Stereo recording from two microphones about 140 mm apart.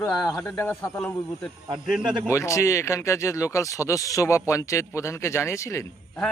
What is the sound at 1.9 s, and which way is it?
Speech, 5° right (ahead or behind).